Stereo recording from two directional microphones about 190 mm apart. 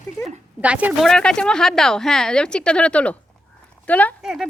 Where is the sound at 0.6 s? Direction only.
10° right (ahead or behind); by 4.3 s 10° left (ahead or behind).